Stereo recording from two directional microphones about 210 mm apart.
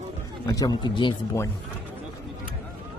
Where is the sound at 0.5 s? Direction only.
20° left (ahead or behind).